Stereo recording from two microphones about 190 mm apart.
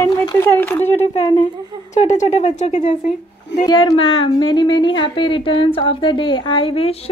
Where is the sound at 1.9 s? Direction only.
40° left (ahead or behind).